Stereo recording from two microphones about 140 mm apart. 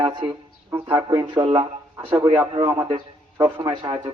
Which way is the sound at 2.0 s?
15° right (ahead or behind).